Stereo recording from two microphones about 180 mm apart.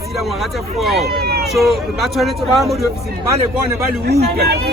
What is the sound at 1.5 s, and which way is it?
A man's voice, centre (ahead or behind).